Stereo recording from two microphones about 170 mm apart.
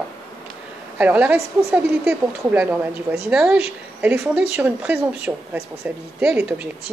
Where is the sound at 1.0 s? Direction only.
10° right (ahead or behind).